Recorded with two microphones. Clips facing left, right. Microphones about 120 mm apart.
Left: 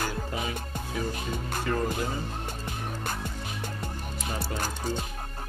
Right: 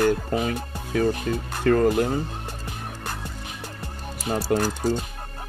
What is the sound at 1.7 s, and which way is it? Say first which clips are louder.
Speech: right 11 dB; 55° right (ahead or behind).